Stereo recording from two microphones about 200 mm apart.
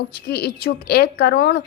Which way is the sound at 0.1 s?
50° left (ahead or behind).